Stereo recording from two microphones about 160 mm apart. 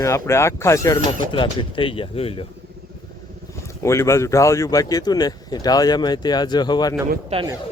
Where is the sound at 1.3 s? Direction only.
30° left (ahead or behind).